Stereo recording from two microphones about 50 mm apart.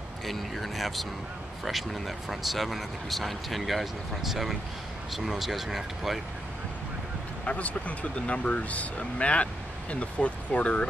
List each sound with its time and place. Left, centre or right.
0.3 s speech: centre
7.4 s speech: left